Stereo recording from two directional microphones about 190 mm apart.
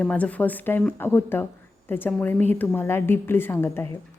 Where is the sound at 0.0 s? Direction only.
5° left (ahead or behind).